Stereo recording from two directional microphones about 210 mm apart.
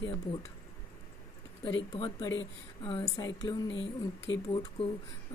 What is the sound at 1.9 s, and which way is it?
A woman's voice, 20° left (ahead or behind).